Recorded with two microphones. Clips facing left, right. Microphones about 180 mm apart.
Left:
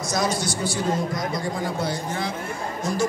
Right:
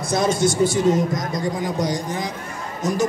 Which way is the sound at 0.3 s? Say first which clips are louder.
Right 8 dB; 50° right (ahead or behind).